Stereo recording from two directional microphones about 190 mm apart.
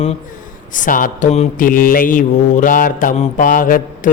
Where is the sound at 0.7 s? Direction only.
45° left (ahead or behind).